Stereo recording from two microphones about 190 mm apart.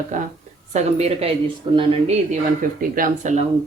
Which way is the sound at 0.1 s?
40° right (ahead or behind).